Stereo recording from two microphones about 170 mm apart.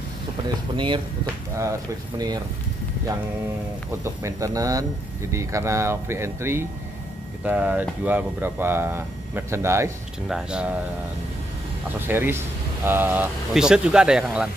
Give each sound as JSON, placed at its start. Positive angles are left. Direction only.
{"t": 0.7, "sound": "speech", "side_deg": -30}
{"t": 4.0, "sound": "speech", "side_deg": -20}
{"t": 10.2, "sound": "speech", "side_deg": -5}
{"t": 12.0, "sound": "speech", "side_deg": -10}